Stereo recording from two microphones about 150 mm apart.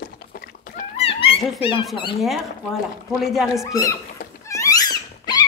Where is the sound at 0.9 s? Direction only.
40° left (ahead or behind).